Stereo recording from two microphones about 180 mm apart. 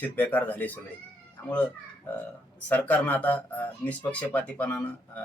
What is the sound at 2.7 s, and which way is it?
Speech, 10° left (ahead or behind).